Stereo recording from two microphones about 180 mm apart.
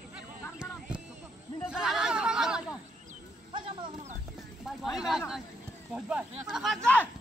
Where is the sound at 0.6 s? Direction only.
5° right (ahead or behind).